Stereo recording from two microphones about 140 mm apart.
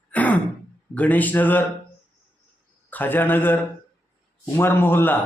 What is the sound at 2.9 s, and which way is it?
A man's voice, 15° left (ahead or behind).